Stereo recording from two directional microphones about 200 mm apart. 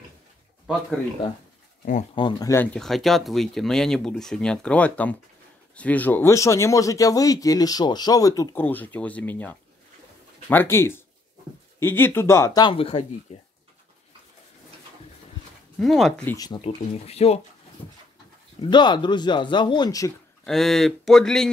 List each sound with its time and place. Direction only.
2.1 s speech: 20° left (ahead or behind)
15.8 s speech: centre (ahead or behind)
16.3 s speech: 20° left (ahead or behind)
16.6 s speech: 30° left (ahead or behind)
17.8 s speech: 10° left (ahead or behind)
18.6 s speech: 20° left (ahead or behind)
20.4 s speech: centre (ahead or behind)